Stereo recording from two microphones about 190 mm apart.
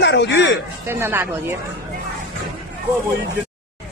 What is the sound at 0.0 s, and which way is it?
Speech, 65° left (ahead or behind).